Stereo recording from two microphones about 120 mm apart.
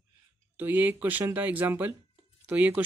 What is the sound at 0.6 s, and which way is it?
Speech, 15° right (ahead or behind).